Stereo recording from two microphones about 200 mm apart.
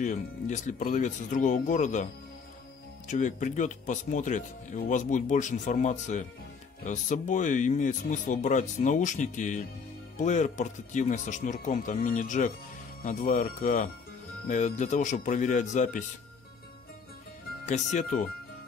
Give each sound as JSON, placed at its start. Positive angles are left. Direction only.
{"t": 0.0, "sound": "speech", "side_deg": 40}
{"t": 3.1, "sound": "speech", "side_deg": 40}
{"t": 17.6, "sound": "speech", "side_deg": 35}